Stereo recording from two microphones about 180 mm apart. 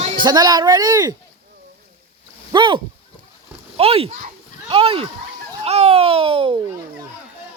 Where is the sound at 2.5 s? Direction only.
25° right (ahead or behind).